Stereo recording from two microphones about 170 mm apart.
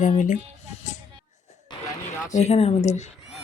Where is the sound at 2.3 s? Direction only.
40° left (ahead or behind).